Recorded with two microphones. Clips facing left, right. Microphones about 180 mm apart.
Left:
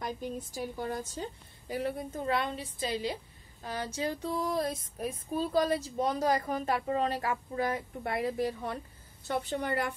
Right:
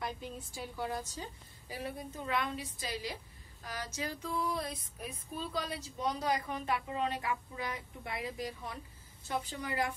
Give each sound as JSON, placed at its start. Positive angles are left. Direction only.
{"t": 0.0, "sound": "a woman's voice", "side_deg": 45}
{"t": 1.1, "sound": "a woman's voice", "side_deg": 55}
{"t": 2.2, "sound": "a woman's voice", "side_deg": 30}
{"t": 3.6, "sound": "female singing", "side_deg": 30}
{"t": 5.3, "sound": "a woman's voice", "side_deg": 45}